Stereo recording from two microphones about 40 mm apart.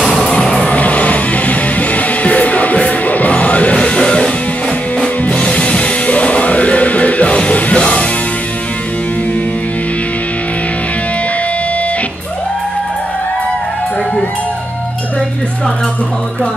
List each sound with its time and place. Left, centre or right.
0.3 s music: left
3.8 s music: left
5.4 s music: left